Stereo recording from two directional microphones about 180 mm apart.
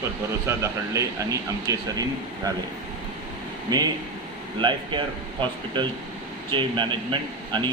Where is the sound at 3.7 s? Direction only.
20° right (ahead or behind).